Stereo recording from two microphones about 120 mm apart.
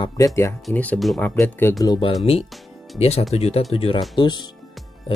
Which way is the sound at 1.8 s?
35° left (ahead or behind).